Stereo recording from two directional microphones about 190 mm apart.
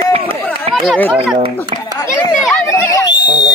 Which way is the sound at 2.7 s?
15° left (ahead or behind).